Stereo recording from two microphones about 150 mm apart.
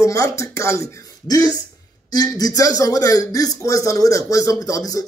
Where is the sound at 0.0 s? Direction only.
20° left (ahead or behind).